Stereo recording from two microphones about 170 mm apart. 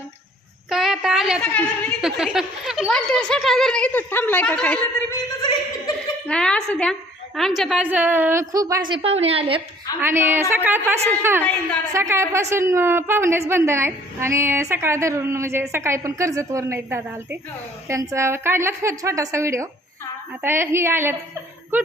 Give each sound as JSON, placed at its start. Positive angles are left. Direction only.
{"t": 0.7, "sound": "a sound", "side_deg": 0}
{"t": 1.5, "sound": "speech", "side_deg": 5}
{"t": 5.4, "sound": "chuckle", "side_deg": 25}
{"t": 6.2, "sound": "a woman's voice", "side_deg": 5}
{"t": 8.9, "sound": "a woman's voice", "side_deg": -35}
{"t": 10.0, "sound": "a woman's voice", "side_deg": -15}